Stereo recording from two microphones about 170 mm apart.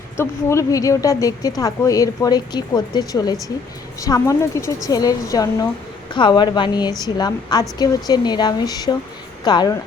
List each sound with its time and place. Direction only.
0.2 s a woman's voice: 15° left (ahead or behind)